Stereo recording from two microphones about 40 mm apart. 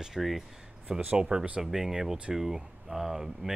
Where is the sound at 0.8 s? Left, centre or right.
Right.